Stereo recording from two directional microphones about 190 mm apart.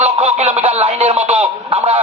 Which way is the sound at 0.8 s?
30° right (ahead or behind).